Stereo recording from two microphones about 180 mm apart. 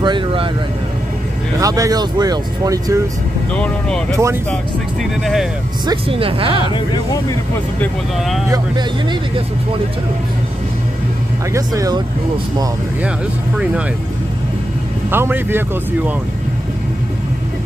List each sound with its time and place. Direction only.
0.0 s vehicle: 25° right (ahead or behind)
1.6 s speech: 20° right (ahead or behind)
3.5 s speech: 5° left (ahead or behind)
5.2 s speech: centre (ahead or behind)
5.9 s speech: 30° right (ahead or behind)
11.5 s speech: 20° right (ahead or behind)
15.0 s speech: 10° right (ahead or behind)